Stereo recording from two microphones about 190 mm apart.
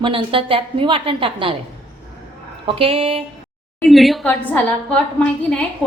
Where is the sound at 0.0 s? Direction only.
30° right (ahead or behind).